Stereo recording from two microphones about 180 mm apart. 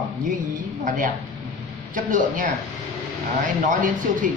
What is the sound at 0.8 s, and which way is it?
Speech, 50° right (ahead or behind).